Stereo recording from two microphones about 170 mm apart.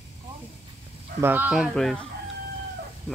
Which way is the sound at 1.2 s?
10° right (ahead or behind).